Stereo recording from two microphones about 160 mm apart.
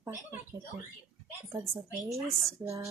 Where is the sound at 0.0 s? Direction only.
20° right (ahead or behind).